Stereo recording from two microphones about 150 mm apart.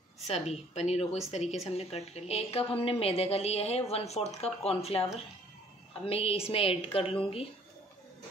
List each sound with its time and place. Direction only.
0.3 s a woman's voice: 45° left (ahead or behind)
6.0 s a woman's voice: 40° left (ahead or behind)